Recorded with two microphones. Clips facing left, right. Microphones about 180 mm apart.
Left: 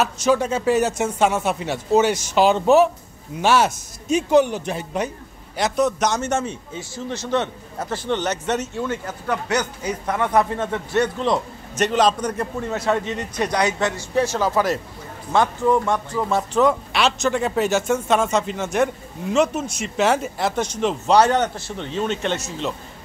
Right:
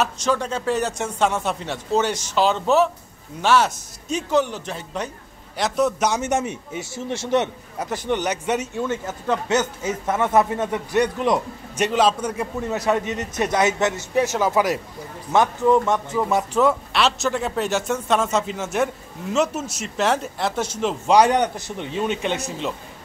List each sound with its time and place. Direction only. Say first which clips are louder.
0.0 s speech: left 3 dB; 5° left (ahead or behind)
5.6 s a man's voice: left 1 dB; 5° right (ahead or behind)
9.3 s a man's voice: right 2 dB; 25° right (ahead or behind); by 12.7 s 5° right (ahead or behind)
12.7 s a man's voice: even; 20° right (ahead or behind)
16.6 s speech: left 1 dB; centre (ahead or behind)